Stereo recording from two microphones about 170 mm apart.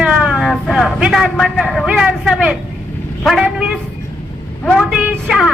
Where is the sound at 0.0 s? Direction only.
5° right (ahead or behind).